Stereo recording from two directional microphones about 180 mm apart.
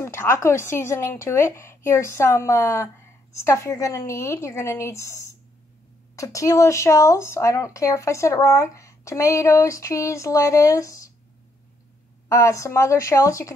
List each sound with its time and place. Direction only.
0.0 s speech: 15° left (ahead or behind)
12.3 s speech: 15° left (ahead or behind)